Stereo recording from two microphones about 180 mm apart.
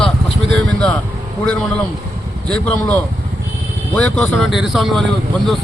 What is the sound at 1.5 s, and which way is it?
Speech, 5° left (ahead or behind).